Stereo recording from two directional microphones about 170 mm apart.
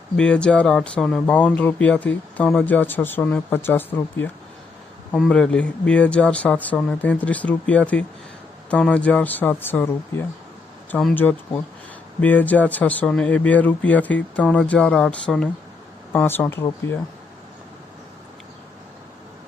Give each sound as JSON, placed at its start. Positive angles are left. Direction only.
{"t": 0.2, "sound": "speech", "side_deg": 5}